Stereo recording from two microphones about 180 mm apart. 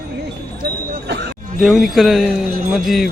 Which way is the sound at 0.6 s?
75° right (ahead or behind).